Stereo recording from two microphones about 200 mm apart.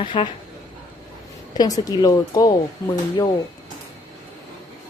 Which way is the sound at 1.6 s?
20° left (ahead or behind).